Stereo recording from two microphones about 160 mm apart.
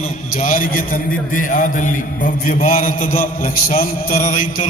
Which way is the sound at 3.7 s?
55° left (ahead or behind).